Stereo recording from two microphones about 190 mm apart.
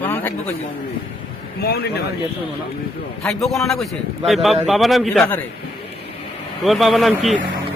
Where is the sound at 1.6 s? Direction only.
60° left (ahead or behind).